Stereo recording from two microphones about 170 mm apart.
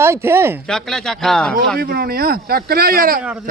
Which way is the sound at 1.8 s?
65° right (ahead or behind).